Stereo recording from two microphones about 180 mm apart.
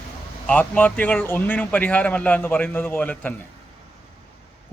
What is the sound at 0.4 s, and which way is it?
A man's voice, 10° left (ahead or behind).